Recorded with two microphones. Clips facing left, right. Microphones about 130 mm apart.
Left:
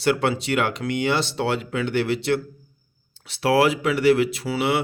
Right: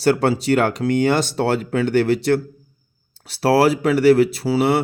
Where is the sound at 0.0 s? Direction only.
40° right (ahead or behind).